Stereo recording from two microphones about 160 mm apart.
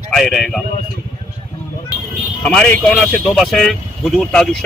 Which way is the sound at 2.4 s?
5° left (ahead or behind).